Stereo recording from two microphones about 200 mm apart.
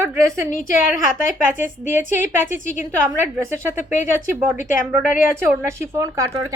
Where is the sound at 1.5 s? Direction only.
10° right (ahead or behind).